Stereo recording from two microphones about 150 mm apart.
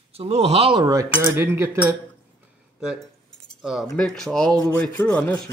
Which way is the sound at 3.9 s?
Centre (ahead or behind).